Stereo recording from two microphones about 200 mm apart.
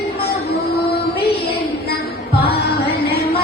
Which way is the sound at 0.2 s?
55° left (ahead or behind).